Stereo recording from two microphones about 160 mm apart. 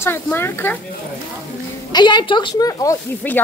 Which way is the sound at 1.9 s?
30° left (ahead or behind).